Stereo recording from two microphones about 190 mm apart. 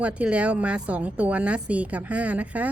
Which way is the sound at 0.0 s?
5° right (ahead or behind).